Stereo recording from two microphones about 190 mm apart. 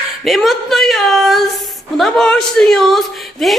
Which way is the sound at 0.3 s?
Centre (ahead or behind).